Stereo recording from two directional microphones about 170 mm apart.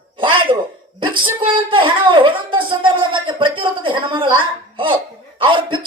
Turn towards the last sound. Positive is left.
turn(degrees=-30)  # may be behind; listen again after turning